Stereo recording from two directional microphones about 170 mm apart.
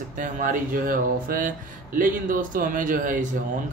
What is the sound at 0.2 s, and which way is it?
Speech, 50° right (ahead or behind).